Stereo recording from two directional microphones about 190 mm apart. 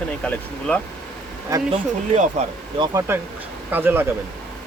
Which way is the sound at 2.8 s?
15° right (ahead or behind).